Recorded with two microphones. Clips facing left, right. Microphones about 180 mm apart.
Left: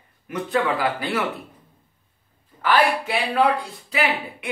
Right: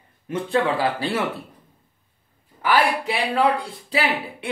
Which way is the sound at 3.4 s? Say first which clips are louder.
Left 1 dB; 30° right (ahead or behind).